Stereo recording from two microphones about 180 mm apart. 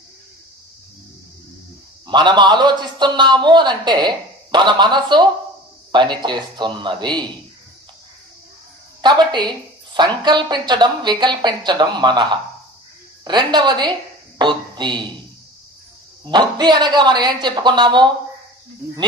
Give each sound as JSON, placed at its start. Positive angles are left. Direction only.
{"t": 2.0, "sound": "a man's voice", "side_deg": -25}
{"t": 9.0, "sound": "a man's voice", "side_deg": -25}
{"t": 16.3, "sound": "a man's voice", "side_deg": -25}